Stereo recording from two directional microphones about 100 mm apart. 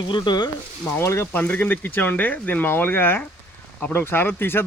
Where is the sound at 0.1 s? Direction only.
50° left (ahead or behind).